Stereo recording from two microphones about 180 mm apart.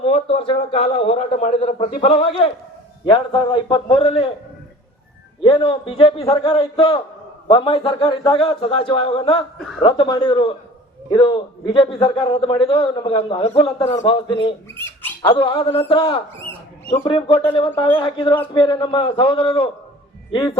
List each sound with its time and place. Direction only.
0.0 s a man's voice: 30° left (ahead or behind)
5.4 s a man's voice: 30° left (ahead or behind)
9.6 s a woman's voice: centre (ahead or behind)
9.8 s a man's voice: 25° left (ahead or behind)
14.8 s speech: 15° left (ahead or behind)
15.2 s a man's voice: 25° left (ahead or behind)
16.5 s a sound: 15° left (ahead or behind)
17.1 s a man's voice: 30° left (ahead or behind)